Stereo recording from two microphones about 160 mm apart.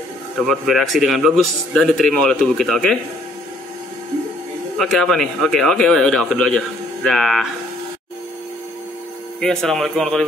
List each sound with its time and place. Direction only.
0.4 s speech: centre (ahead or behind)
4.7 s speech: centre (ahead or behind)
9.4 s speech: 5° left (ahead or behind)